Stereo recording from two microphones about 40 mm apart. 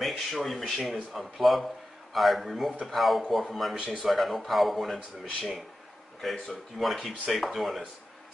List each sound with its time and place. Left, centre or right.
0.0 s a sound: centre
0.5 s speech: centre
3.7 s speech: right
4.0 s speech: centre